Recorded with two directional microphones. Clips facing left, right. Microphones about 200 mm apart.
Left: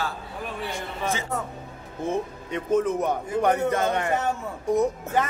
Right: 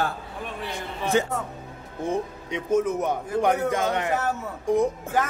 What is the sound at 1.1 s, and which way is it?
Speech, 60° right (ahead or behind).